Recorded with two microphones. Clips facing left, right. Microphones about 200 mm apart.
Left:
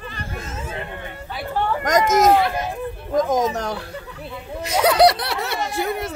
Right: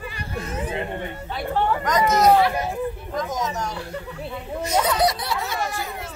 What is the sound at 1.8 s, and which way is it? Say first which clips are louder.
Speech: left 3 dB; 45° left (ahead or behind).